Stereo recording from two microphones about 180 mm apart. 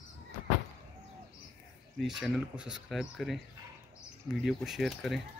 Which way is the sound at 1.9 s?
Centre (ahead or behind).